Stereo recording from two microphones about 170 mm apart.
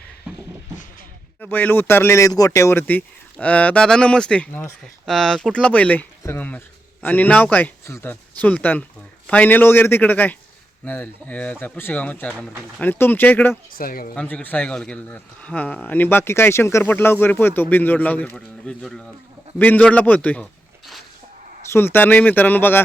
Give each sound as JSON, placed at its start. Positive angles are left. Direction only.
{"t": 1.4, "sound": "speech", "side_deg": 10}
{"t": 13.7, "sound": "a man's voice", "side_deg": 55}
{"t": 14.2, "sound": "speech", "side_deg": 10}